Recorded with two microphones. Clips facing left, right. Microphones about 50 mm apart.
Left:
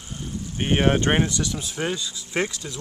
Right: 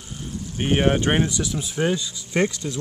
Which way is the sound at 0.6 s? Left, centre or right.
Centre.